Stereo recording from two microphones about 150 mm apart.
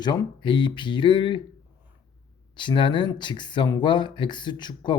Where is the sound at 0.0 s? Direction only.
30° left (ahead or behind).